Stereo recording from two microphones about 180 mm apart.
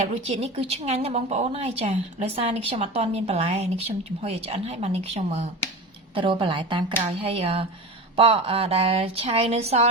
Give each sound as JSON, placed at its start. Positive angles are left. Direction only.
{"t": 0.1, "sound": "speech", "side_deg": -35}